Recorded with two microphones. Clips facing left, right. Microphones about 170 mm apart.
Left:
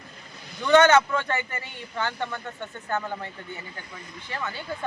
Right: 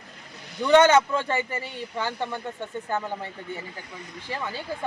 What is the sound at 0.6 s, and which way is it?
Speech, 10° right (ahead or behind).